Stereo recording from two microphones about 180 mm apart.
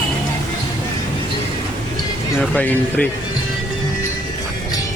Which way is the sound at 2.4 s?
10° left (ahead or behind).